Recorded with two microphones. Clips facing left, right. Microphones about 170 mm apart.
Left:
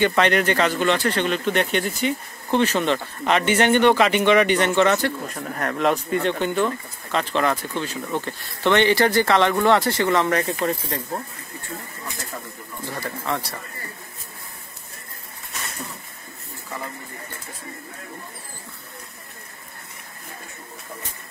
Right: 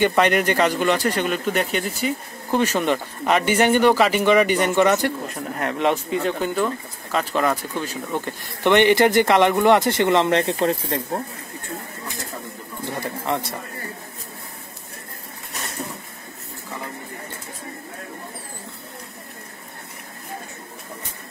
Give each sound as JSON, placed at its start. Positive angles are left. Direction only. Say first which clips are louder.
{"t": 0.0, "sound": "speech", "louder": "right 1 dB", "side_deg": -10}
{"t": 12.8, "sound": "speech", "louder": "right 2 dB", "side_deg": -20}